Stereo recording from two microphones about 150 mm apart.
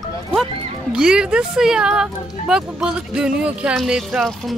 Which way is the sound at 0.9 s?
5° right (ahead or behind).